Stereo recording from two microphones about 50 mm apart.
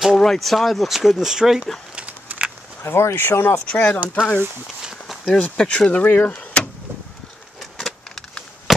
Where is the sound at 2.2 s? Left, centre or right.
Right.